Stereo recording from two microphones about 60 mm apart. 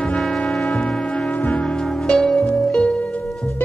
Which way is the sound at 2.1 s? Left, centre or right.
Centre.